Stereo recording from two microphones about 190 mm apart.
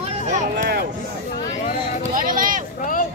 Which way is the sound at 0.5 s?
60° right (ahead or behind).